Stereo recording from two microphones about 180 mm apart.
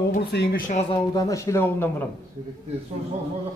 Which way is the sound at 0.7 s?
35° left (ahead or behind).